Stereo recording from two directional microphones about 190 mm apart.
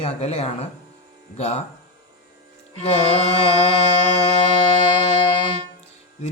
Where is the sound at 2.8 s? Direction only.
30° left (ahead or behind).